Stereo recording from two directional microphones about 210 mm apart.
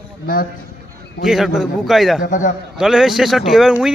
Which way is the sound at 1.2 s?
Centre (ahead or behind).